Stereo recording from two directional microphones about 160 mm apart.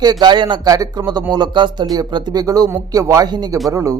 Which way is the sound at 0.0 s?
25° right (ahead or behind).